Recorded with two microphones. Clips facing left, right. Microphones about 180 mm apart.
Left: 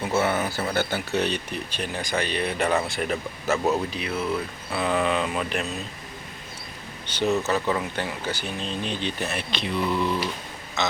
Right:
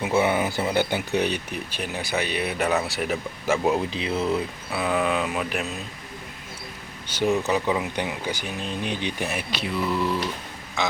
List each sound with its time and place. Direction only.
0.1 s speech: 15° right (ahead or behind)
3.8 s speech: 25° right (ahead or behind)
4.7 s speech: 5° right (ahead or behind)
7.1 s speech: 10° right (ahead or behind)